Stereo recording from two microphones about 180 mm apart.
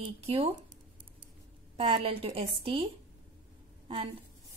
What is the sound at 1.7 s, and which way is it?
A woman's voice, 30° right (ahead or behind).